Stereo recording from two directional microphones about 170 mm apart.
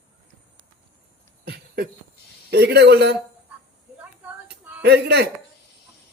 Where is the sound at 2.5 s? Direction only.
80° right.